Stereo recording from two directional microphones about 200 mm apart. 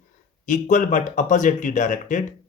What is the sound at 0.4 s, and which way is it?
Speech, 40° left (ahead or behind).